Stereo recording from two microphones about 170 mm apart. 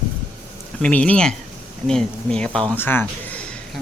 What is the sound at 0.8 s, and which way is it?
Speech, 10° left (ahead or behind).